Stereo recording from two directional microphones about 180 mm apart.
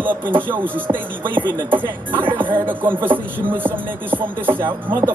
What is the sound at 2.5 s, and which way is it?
Speech, 10° right (ahead or behind).